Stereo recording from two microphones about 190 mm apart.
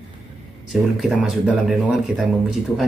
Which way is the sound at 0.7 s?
Centre (ahead or behind).